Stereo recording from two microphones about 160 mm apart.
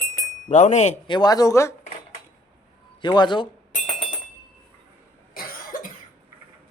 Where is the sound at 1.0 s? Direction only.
25° left (ahead or behind).